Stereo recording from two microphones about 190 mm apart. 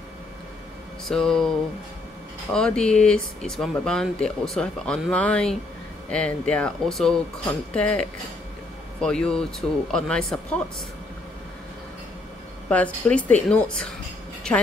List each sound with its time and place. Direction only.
1.0 s speech: 5° left (ahead or behind)
2.5 s speech: 5° left (ahead or behind)
12.6 s speech: 5° left (ahead or behind)